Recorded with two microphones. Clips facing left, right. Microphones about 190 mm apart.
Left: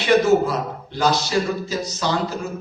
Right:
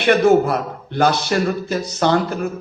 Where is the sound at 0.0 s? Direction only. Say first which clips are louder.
Right 3 dB; 60° right (ahead or behind).